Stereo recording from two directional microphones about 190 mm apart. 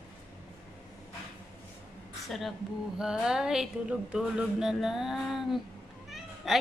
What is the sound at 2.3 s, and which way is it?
A woman's voice, centre (ahead or behind).